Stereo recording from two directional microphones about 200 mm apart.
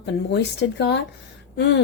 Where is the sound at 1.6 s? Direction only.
60° left (ahead or behind).